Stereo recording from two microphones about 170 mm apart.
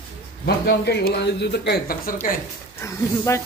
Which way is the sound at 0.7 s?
75° left (ahead or behind).